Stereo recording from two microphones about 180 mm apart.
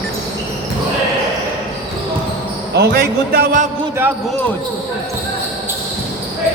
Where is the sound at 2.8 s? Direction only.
60° right (ahead or behind).